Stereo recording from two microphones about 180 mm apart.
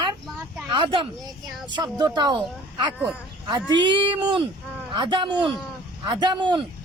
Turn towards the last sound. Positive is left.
turn(degrees=-25)  # may be behind; listen again after turning